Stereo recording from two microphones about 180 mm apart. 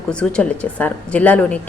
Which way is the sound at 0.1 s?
5° left (ahead or behind).